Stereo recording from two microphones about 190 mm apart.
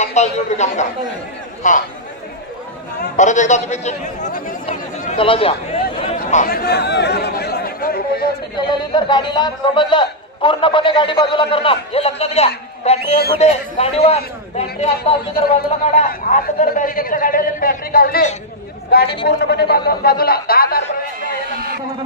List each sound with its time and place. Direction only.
0.0 s a man's voice: 35° left (ahead or behind)
3.2 s a man's voice: 40° left (ahead or behind)
4.6 s chatter: 30° left (ahead or behind)
6.1 s chatter: 50° left (ahead or behind)
8.5 s a man's voice: 25° left (ahead or behind); by 20.9 s 55° left (ahead or behind)